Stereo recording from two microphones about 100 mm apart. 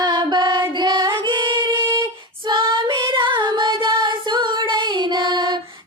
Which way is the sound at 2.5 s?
55° right (ahead or behind).